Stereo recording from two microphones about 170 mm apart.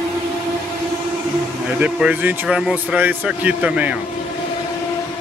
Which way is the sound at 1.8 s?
10° right (ahead or behind).